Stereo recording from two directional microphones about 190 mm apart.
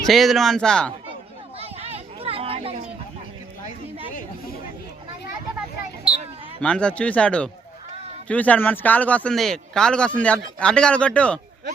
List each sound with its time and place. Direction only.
0.1 s speech: centre (ahead or behind)
1.5 s children playing: 30° right (ahead or behind)
6.6 s speech: 5° left (ahead or behind)